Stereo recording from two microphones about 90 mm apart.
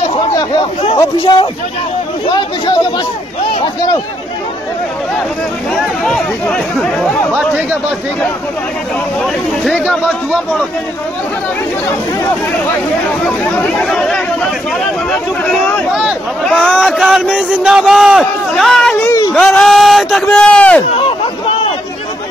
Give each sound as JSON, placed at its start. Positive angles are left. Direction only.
{"t": 1.3, "sound": "a man's voice", "side_deg": 50}
{"t": 5.8, "sound": "a man's voice", "side_deg": 5}
{"t": 7.3, "sound": "speech", "side_deg": -15}
{"t": 9.2, "sound": "a man's voice", "side_deg": 5}
{"t": 13.4, "sound": "speech", "side_deg": 15}
{"t": 13.8, "sound": "a man's voice", "side_deg": 5}
{"t": 15.9, "sound": "a man's voice", "side_deg": -5}
{"t": 20.3, "sound": "speech", "side_deg": 10}